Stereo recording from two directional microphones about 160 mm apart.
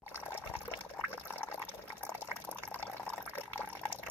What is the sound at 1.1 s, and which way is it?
Fill, 15° left (ahead or behind).